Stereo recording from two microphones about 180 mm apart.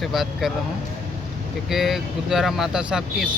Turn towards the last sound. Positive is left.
turn(degrees=-5)  # may be behind; listen again after turning